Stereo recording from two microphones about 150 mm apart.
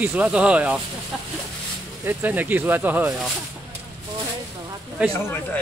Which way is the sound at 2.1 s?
15° right (ahead or behind).